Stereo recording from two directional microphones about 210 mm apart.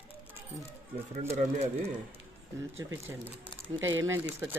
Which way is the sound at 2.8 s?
15° right (ahead or behind).